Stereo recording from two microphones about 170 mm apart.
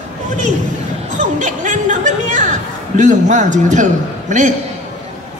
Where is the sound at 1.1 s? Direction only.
45° right (ahead or behind).